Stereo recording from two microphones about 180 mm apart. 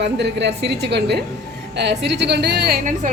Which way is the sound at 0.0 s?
70° right (ahead or behind).